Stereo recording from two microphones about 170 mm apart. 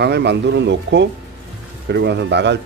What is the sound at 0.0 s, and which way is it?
Speech, 80° right.